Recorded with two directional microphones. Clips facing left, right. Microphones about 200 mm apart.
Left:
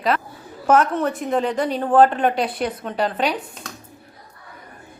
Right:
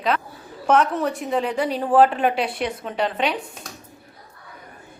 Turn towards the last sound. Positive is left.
turn(degrees=0)  # may be behind; listen again after turning